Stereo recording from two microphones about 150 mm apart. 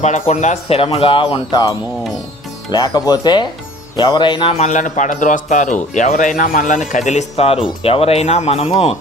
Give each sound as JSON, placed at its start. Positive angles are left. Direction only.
{"t": 0.0, "sound": "speech", "side_deg": 50}
{"t": 2.7, "sound": "a man's voice", "side_deg": 25}